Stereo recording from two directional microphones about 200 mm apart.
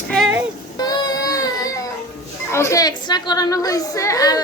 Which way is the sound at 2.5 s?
15° left (ahead or behind).